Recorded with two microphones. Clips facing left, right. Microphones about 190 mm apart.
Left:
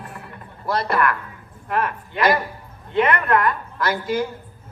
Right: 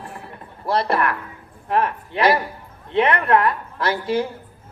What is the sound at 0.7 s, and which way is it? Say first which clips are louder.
A man's voice: right 1 dB; 30° right (ahead or behind).